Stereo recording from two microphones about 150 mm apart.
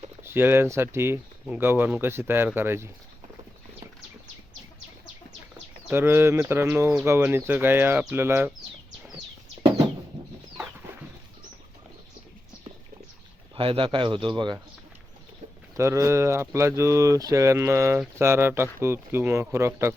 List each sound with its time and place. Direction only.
0.2 s speech: 15° right (ahead or behind)
5.9 s speech: 15° right (ahead or behind)
13.6 s a man's voice: 35° right (ahead or behind)
15.7 s speech: 20° right (ahead or behind)